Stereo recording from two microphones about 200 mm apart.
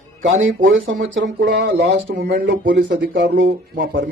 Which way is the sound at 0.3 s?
75° right (ahead or behind).